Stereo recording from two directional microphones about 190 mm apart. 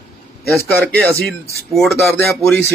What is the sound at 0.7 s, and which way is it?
A man's voice, 10° left (ahead or behind).